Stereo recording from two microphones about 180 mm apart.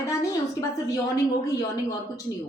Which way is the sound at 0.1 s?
15° left (ahead or behind).